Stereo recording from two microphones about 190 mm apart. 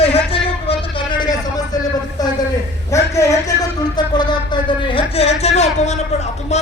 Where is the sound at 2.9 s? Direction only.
15° left (ahead or behind).